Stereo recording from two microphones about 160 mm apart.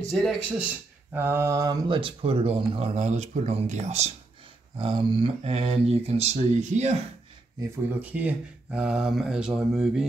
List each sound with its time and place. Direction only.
0.2 s speech: centre (ahead or behind)
1.1 s speech: 15° right (ahead or behind); by 4.1 s 45° right (ahead or behind)
4.7 s speech: 35° right (ahead or behind)
8.0 s speech: 10° right (ahead or behind)